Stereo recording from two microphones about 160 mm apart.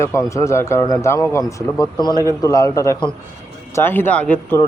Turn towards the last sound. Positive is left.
turn(degrees=10)  # may be behind; listen again after turning